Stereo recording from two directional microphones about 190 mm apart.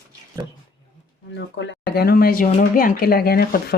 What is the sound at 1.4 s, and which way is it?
Speech, 70° left (ahead or behind).